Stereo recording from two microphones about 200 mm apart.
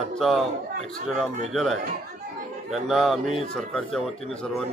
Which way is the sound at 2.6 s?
Centre (ahead or behind).